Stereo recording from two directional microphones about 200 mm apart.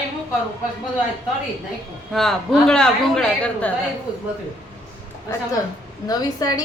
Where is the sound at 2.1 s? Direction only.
Centre (ahead or behind).